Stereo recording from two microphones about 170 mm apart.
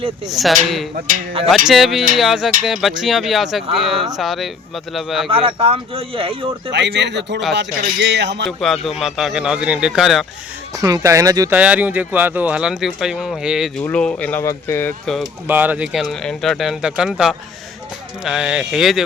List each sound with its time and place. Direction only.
0.3 s speech: centre (ahead or behind)
5.3 s speech: 35° right (ahead or behind)
6.7 s speech: 90° right
8.4 s speech: centre (ahead or behind)
10.8 s speech: 20° right (ahead or behind)
11.5 s speech: 10° right (ahead or behind); by 14.9 s 15° left (ahead or behind)
15.4 s speech: 10° right (ahead or behind)